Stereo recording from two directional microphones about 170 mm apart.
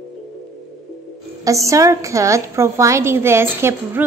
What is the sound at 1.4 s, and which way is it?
A woman's voice, 20° right (ahead or behind).